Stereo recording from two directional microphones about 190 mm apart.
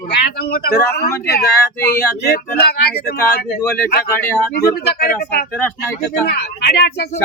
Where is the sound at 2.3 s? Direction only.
55° left (ahead or behind).